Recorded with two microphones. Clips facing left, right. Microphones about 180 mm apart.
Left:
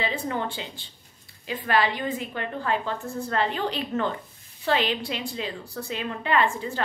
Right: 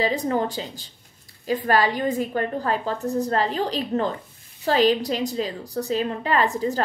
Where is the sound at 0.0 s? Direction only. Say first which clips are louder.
Right 6 dB; 40° right (ahead or behind).